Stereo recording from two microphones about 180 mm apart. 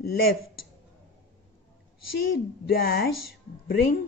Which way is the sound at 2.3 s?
60° left (ahead or behind).